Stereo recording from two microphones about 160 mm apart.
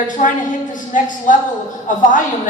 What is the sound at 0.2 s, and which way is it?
A woman's voice, 50° left (ahead or behind).